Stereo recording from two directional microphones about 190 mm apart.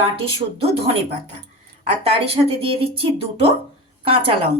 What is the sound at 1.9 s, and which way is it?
Speech, 30° right (ahead or behind).